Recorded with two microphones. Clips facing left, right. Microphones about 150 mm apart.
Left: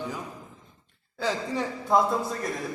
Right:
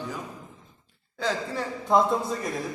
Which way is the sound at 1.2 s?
10° left (ahead or behind).